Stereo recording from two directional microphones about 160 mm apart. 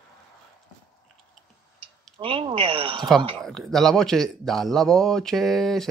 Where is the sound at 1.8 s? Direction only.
35° right (ahead or behind).